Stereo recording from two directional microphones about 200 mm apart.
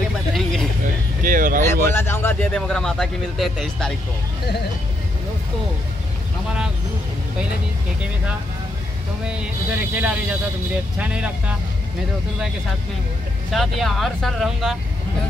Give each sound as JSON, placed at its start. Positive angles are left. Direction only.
{"t": 0.3, "sound": "vehicle", "side_deg": 0}
{"t": 1.2, "sound": "speech", "side_deg": -45}
{"t": 1.9, "sound": "speech", "side_deg": 10}
{"t": 9.2, "sound": "speech", "side_deg": -5}
{"t": 13.5, "sound": "speech", "side_deg": 0}